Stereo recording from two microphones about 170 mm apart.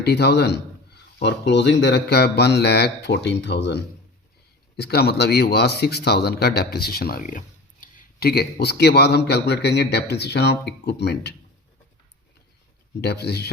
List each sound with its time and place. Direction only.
0.0 s speech: 75° left (ahead or behind)
4.8 s speech: 70° left (ahead or behind)
13.0 s speech: 75° left (ahead or behind)